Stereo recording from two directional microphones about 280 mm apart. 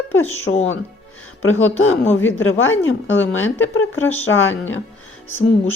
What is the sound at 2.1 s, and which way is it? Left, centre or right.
Speech, left.